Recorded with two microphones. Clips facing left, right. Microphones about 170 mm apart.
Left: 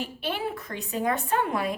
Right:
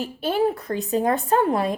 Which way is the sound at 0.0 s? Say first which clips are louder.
Right 9 dB; 40° right (ahead or behind).